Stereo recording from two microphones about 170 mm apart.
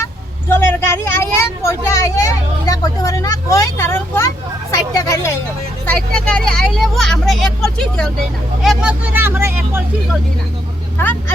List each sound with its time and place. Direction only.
0.0 s vehicle: 15° left (ahead or behind)
4.7 s speech: 20° left (ahead or behind); by 9.8 s 15° right (ahead or behind)
10.9 s speech: 10° left (ahead or behind)